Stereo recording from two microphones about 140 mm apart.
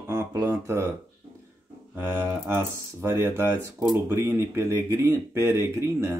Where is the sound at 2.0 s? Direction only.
15° right (ahead or behind).